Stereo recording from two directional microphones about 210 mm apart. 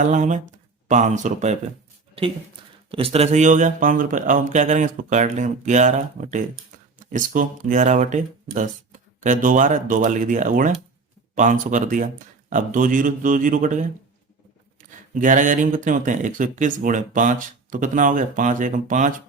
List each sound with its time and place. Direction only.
0.0 s speech: 35° right (ahead or behind)
2.9 s speech: 30° right (ahead or behind)